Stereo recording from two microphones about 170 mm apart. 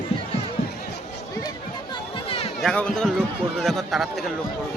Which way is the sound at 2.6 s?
5° left (ahead or behind).